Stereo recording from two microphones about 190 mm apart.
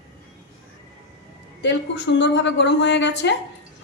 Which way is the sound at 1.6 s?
65° left (ahead or behind).